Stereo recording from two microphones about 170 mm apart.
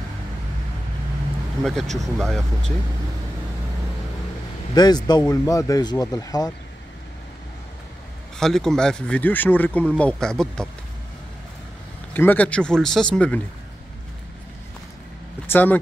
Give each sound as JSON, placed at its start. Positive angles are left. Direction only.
{"t": 1.6, "sound": "speech", "side_deg": 0}
{"t": 4.7, "sound": "speech", "side_deg": 25}
{"t": 8.4, "sound": "speech", "side_deg": 5}
{"t": 12.1, "sound": "speech", "side_deg": 10}
{"t": 15.5, "sound": "speech", "side_deg": 10}